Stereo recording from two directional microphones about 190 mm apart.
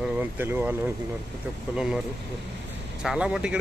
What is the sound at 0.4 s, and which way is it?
Speech, 10° right (ahead or behind).